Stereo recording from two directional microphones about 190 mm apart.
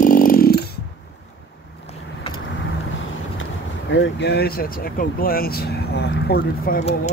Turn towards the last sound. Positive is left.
turn(degrees=55)  # may be behind; listen again after turning